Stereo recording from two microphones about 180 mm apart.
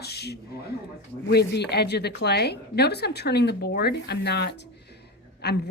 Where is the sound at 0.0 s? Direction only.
65° left (ahead or behind).